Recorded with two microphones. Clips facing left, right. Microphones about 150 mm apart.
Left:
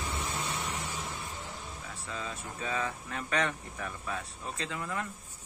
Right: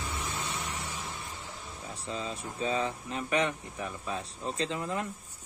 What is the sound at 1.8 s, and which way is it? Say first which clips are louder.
Speech: right 5 dB; 25° right (ahead or behind).